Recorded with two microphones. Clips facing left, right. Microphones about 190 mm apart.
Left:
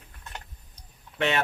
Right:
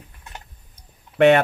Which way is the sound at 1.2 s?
55° right (ahead or behind).